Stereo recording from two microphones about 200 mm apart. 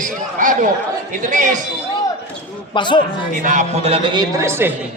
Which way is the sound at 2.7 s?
25° left (ahead or behind).